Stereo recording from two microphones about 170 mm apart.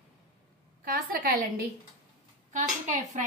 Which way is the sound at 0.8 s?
60° right (ahead or behind).